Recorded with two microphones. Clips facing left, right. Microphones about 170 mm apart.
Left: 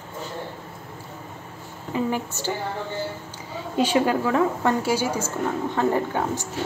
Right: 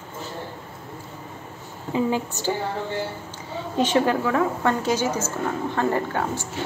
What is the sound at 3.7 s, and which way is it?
A woman's voice, 15° left (ahead or behind).